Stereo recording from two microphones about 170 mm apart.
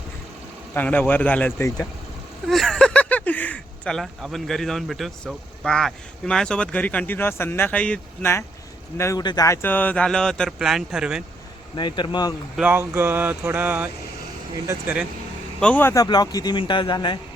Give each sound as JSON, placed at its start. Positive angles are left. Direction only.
{"t": 0.7, "sound": "speech", "side_deg": 10}
{"t": 2.5, "sound": "speech", "side_deg": 0}
{"t": 11.8, "sound": "speech", "side_deg": 25}
{"t": 12.5, "sound": "speech", "side_deg": -10}
{"t": 15.6, "sound": "speech", "side_deg": 10}
{"t": 16.0, "sound": "speech", "side_deg": 25}